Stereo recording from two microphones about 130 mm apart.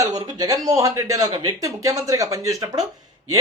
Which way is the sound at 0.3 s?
30° right (ahead or behind).